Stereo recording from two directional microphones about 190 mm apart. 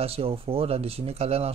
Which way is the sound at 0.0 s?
30° right (ahead or behind).